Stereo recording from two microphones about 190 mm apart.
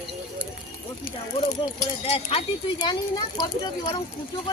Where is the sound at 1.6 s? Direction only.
30° left (ahead or behind).